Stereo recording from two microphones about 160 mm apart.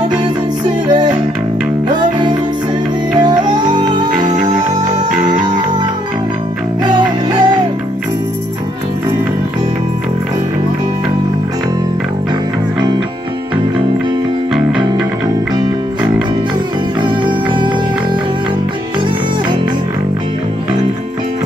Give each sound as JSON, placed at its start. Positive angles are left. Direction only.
{"t": 3.1, "sound": "music", "side_deg": -25}
{"t": 6.8, "sound": "music", "side_deg": -25}
{"t": 17.0, "sound": "music", "side_deg": -30}